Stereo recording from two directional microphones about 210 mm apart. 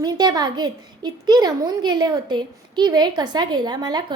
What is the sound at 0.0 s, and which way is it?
A woman's voice, 20° right (ahead or behind).